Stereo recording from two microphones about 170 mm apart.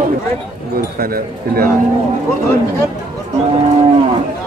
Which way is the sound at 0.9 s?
60° right (ahead or behind).